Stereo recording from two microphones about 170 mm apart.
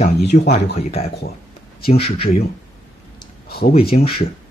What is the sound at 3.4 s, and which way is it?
Speech, 65° left (ahead or behind).